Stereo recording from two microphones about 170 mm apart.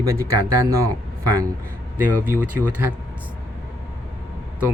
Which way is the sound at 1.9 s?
10° right (ahead or behind).